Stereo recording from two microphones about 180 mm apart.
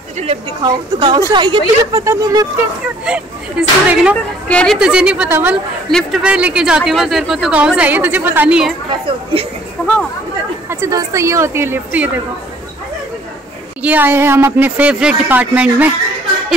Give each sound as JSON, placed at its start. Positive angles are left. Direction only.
{"t": 0.9, "sound": "a woman's voice", "side_deg": -25}
{"t": 3.1, "sound": "speech", "side_deg": -5}
{"t": 9.0, "sound": "speech", "side_deg": -30}
{"t": 9.8, "sound": "speech", "side_deg": 5}
{"t": 10.7, "sound": "speech", "side_deg": -15}
{"t": 13.8, "sound": "speech", "side_deg": -10}